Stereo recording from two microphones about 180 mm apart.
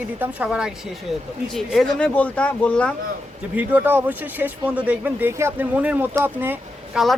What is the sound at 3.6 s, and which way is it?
Speech, 10° right (ahead or behind).